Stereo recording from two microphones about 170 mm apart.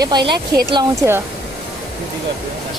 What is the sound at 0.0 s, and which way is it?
Speech, 25° right (ahead or behind).